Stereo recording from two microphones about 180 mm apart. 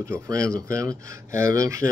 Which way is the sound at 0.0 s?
15° right (ahead or behind).